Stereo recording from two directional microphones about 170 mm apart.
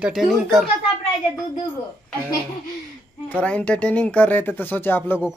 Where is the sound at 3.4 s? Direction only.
5° left (ahead or behind).